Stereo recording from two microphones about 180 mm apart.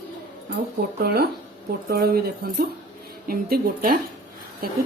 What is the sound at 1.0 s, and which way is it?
A woman's voice, 60° right (ahead or behind).